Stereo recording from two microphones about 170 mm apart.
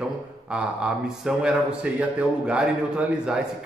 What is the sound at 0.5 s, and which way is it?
Speech, 5° right (ahead or behind).